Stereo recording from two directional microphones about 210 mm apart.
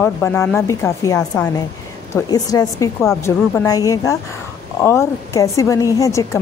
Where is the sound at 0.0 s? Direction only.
10° left (ahead or behind).